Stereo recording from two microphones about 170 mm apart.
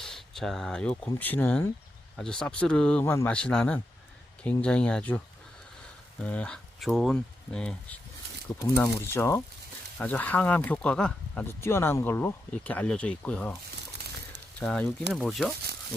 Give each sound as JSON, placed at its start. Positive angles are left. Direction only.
{"t": 0.0, "sound": "speech", "side_deg": 0}
{"t": 6.2, "sound": "speech", "side_deg": 10}
{"t": 14.6, "sound": "speech", "side_deg": 5}